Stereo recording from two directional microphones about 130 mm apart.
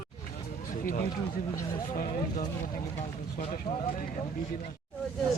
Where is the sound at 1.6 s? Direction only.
90° left.